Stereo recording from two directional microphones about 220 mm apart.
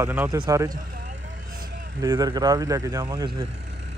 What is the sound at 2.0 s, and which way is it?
Speech, 15° right (ahead or behind).